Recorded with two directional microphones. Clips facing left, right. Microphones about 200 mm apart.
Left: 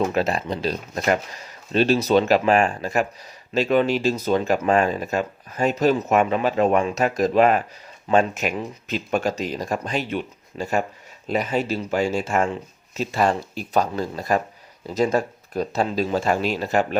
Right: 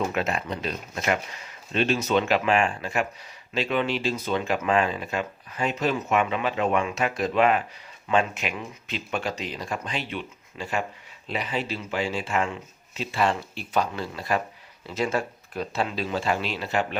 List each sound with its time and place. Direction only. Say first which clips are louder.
0.1 s speech: left 5 dB; 35° left (ahead or behind)